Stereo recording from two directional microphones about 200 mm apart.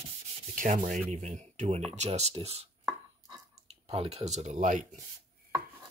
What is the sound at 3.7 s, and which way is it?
Speech, 30° right (ahead or behind).